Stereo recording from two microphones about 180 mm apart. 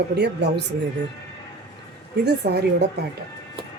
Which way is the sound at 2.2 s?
65° right (ahead or behind).